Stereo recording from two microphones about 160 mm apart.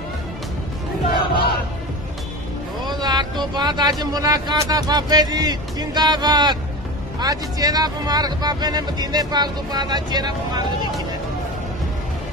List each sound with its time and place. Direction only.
1.3 s battle cry: 75° left (ahead or behind)
2.9 s speech: 25° right (ahead or behind)